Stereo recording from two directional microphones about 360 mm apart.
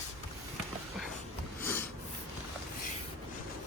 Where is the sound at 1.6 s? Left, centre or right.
Centre.